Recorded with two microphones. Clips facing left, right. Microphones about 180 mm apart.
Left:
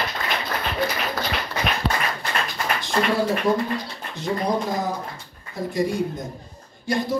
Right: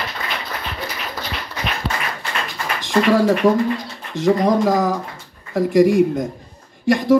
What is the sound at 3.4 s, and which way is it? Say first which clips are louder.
A man's voice: right 6 dB; 90° right.